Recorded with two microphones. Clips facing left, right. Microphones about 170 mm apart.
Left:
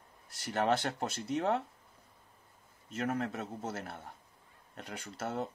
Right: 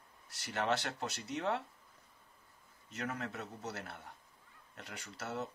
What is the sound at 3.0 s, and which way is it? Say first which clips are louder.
Speech: left 6 dB; 50° left (ahead or behind).